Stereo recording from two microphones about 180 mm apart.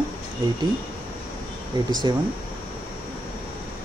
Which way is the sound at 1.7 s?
25° right (ahead or behind).